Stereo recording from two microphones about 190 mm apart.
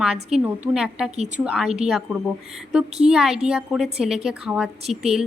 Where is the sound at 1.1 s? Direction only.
35° right (ahead or behind).